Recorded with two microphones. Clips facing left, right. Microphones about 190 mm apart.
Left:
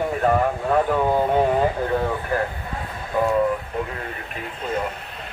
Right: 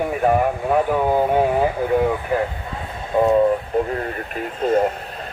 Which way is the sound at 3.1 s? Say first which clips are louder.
Right 5 dB; 25° right (ahead or behind).